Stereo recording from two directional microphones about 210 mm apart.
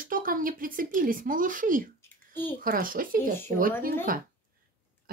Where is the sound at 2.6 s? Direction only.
45° right (ahead or behind).